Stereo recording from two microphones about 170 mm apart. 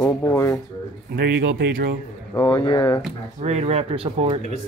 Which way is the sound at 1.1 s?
80° right.